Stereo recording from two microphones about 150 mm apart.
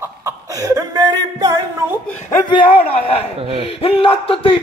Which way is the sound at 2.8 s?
45° left (ahead or behind).